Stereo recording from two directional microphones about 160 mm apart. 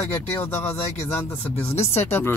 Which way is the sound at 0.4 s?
15° left (ahead or behind).